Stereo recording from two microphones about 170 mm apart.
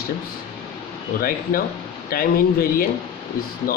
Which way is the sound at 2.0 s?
60° left (ahead or behind).